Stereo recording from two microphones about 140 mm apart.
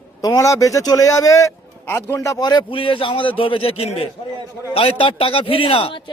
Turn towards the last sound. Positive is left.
turn(degrees=40)  # may be behind; listen again after turning